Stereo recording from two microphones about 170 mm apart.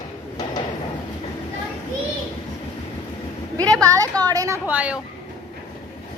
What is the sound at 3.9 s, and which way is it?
Speech, 20° right (ahead or behind).